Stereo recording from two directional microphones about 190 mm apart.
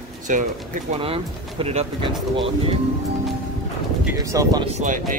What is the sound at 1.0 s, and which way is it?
Speech, 30° right (ahead or behind).